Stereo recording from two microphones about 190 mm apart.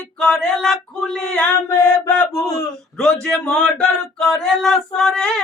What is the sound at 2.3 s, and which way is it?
Speech, 20° left (ahead or behind).